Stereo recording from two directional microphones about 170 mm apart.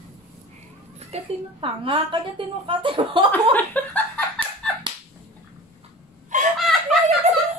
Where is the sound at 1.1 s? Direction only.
30° right (ahead or behind).